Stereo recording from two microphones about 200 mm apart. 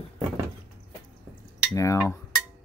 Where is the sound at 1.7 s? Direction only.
15° left (ahead or behind).